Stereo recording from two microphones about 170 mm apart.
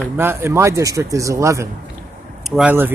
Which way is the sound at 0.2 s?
15° right (ahead or behind).